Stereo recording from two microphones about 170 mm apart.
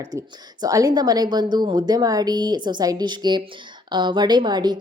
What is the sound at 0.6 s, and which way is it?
A woman's voice, 20° right (ahead or behind).